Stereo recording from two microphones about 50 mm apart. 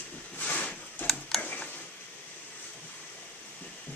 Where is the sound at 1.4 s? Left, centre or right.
Left.